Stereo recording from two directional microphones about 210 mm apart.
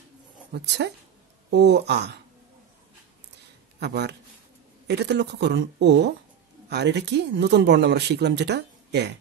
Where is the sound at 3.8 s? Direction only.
50° right (ahead or behind).